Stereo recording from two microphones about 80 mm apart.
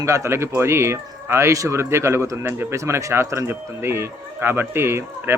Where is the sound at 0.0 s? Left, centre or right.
Right.